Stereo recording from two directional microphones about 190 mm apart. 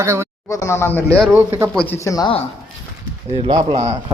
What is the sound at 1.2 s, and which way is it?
Speech, 10° right (ahead or behind).